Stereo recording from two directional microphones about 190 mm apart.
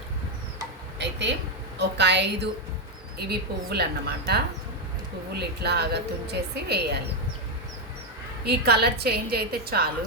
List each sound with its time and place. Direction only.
0.9 s a woman's voice: 65° right (ahead or behind)
8.4 s a woman's voice: 60° right (ahead or behind)